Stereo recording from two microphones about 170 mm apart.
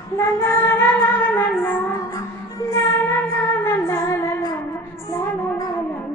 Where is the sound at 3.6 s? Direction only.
15° left (ahead or behind).